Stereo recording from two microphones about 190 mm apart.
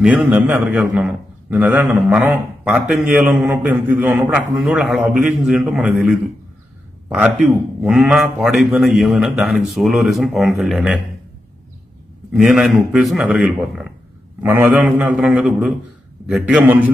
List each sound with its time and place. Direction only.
0.0 s a man's voice: 10° right (ahead or behind)
12.3 s a man's voice: centre (ahead or behind)